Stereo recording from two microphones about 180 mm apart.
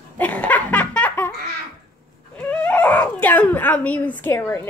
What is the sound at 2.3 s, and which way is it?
Speech, 5° left (ahead or behind).